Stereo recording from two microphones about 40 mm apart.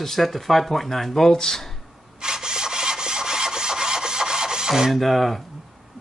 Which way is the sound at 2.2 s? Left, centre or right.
Centre.